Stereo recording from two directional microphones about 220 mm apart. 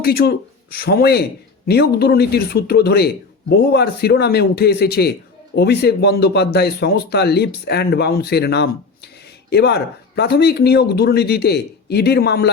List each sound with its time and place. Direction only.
0.0 s speech: 45° left (ahead or behind)